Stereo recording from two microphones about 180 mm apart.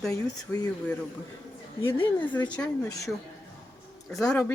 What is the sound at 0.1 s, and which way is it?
Speech, 20° left (ahead or behind).